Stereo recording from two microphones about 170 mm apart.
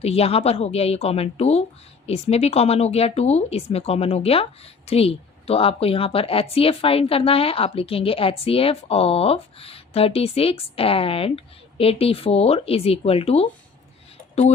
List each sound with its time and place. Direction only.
0.0 s speech: 35° left (ahead or behind)